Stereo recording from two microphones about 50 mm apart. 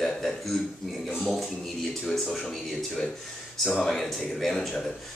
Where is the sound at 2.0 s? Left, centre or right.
Centre.